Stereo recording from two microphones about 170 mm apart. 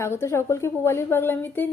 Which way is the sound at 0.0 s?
15° left (ahead or behind).